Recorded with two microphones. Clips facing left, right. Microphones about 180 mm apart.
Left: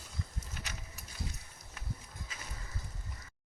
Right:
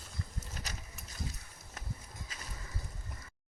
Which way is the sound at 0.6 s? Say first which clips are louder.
Right 1 dB; 40° right (ahead or behind).